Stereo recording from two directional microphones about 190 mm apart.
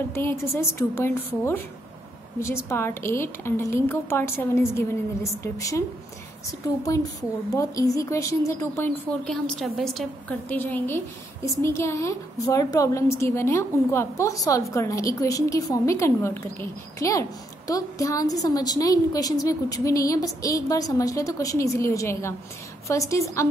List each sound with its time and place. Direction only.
0.1 s a woman's voice: 10° left (ahead or behind)